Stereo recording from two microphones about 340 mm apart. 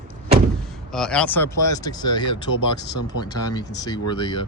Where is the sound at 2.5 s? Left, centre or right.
Left.